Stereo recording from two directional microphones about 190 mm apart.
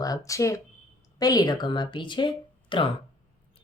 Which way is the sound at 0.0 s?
20° left (ahead or behind).